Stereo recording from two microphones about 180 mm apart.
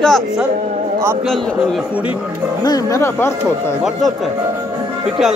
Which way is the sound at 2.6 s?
15° left (ahead or behind).